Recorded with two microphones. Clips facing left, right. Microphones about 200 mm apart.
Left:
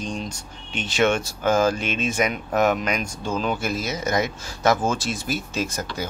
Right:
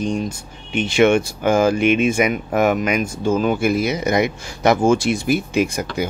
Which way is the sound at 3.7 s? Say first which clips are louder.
Right 8 dB; 60° right (ahead or behind).